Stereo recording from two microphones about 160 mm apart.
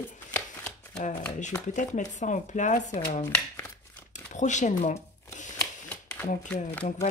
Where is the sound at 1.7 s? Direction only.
50° left (ahead or behind).